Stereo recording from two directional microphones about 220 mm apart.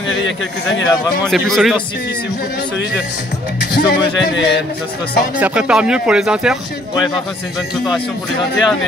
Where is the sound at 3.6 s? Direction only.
50° left (ahead or behind).